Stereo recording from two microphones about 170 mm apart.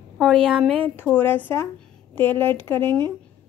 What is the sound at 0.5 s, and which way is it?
Speech, centre (ahead or behind).